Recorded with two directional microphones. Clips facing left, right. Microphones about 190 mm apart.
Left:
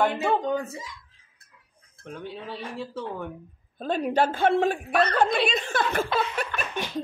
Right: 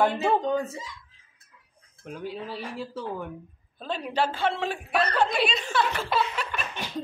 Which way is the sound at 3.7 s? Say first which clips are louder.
Left 5 dB; 50° left (ahead or behind).